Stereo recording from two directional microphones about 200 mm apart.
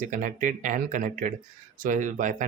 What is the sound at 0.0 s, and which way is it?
Speech, 40° right (ahead or behind).